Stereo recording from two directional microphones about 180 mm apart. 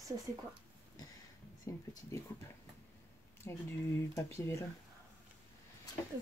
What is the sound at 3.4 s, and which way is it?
Speech, 15° left (ahead or behind).